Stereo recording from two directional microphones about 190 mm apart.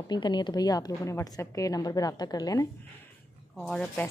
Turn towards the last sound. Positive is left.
turn(degrees=5)  # may be behind; listen again after turning